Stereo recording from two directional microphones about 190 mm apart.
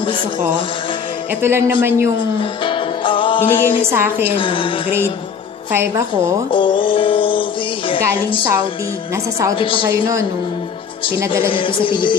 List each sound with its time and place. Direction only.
1.4 s speech: 10° right (ahead or behind)
2.6 s music: 25° left (ahead or behind)
3.8 s speech: 10° right (ahead or behind)
4.4 s music: 25° left (ahead or behind)
5.7 s speech: 15° right (ahead or behind)
6.5 s music: 25° left (ahead or behind)
9.1 s speech: 15° right (ahead or behind)
9.6 s music: 25° left (ahead or behind)
11.2 s music: 25° left (ahead or behind)